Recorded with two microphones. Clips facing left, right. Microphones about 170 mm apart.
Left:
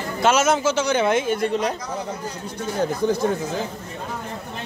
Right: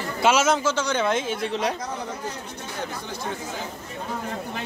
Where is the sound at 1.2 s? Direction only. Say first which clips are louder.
Left 5 dB; 55° left (ahead or behind).